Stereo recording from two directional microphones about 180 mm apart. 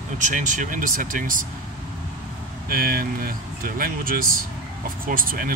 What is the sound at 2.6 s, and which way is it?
Speech, 55° right (ahead or behind).